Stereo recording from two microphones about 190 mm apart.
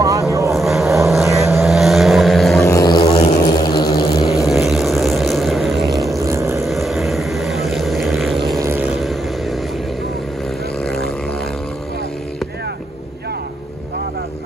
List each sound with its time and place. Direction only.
0.0 s vehicle: 15° right (ahead or behind)
0.5 s vehicle: centre (ahead or behind)
2.6 s music: 15° left (ahead or behind)
3.3 s a sound: 20° left (ahead or behind)
4.3 s vehicle: centre (ahead or behind)
6.1 s vehicle: 15° right (ahead or behind)
6.6 s vehicle: centre (ahead or behind)
8.5 s vehicle: 10° right (ahead or behind)